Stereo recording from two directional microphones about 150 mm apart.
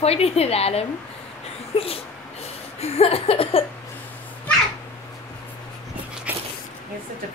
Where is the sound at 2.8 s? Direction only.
40° left (ahead or behind).